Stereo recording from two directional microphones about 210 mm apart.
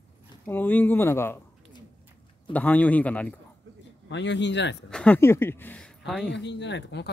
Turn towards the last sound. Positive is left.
turn(degrees=55)  # may be behind; listen again after turning